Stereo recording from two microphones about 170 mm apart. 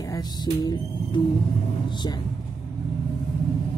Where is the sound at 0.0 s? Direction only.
20° left (ahead or behind).